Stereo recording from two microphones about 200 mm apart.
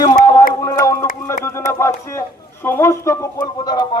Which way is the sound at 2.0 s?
10° left (ahead or behind).